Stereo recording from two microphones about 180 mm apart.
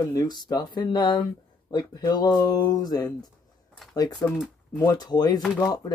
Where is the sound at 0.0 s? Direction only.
20° left (ahead or behind).